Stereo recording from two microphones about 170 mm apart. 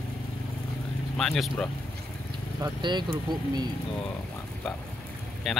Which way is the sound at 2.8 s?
25° right (ahead or behind).